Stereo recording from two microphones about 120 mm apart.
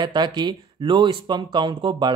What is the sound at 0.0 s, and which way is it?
Speech, 35° right (ahead or behind).